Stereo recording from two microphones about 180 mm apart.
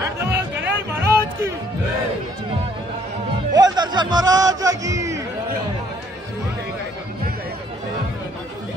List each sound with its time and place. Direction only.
0.0 s music: 15° right (ahead or behind)
3.5 s music: 25° right (ahead or behind)